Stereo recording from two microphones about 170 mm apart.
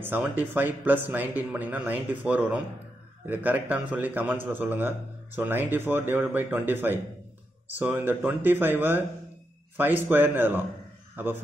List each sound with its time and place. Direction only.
0.0 s a man's voice: 10° right (ahead or behind)